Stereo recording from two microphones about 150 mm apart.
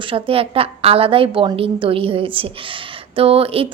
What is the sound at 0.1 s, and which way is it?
Speech, 40° right (ahead or behind).